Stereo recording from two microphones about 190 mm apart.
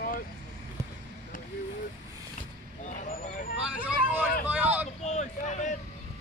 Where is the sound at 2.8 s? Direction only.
40° left (ahead or behind).